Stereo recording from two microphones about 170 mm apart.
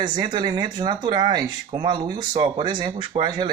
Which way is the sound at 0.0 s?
25° right (ahead or behind).